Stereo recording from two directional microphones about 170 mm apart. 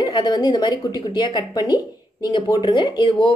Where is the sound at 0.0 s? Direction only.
25° left (ahead or behind).